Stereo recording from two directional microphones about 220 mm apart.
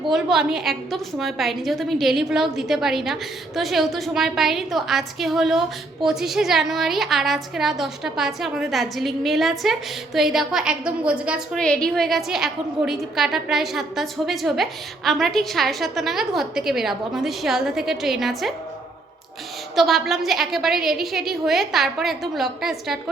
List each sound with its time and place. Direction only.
0.1 s a woman's voice: centre (ahead or behind)
19.7 s a woman's voice: centre (ahead or behind)